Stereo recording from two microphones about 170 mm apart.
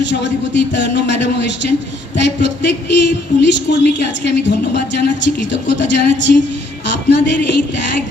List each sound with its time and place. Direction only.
0.0 s a woman's voice: 90° left